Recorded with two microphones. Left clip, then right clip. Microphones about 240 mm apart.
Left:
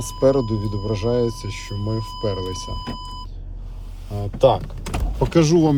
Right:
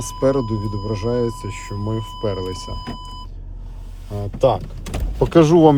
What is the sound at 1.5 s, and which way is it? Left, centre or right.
Speech, centre.